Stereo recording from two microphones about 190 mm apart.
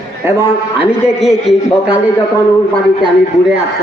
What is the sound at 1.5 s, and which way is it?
Speech, centre (ahead or behind).